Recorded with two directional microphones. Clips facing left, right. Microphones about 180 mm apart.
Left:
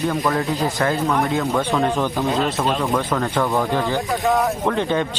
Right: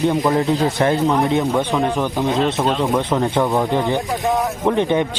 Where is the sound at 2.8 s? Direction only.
20° right (ahead or behind).